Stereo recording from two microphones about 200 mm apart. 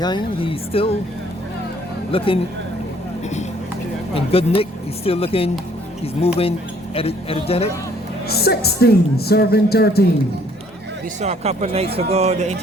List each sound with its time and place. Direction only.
0.0 s speech: 25° left (ahead or behind)
2.1 s speech: 25° left (ahead or behind)
4.1 s speech: 30° left (ahead or behind)
8.3 s speech: 50° left (ahead or behind)
11.2 s speech: 30° right (ahead or behind)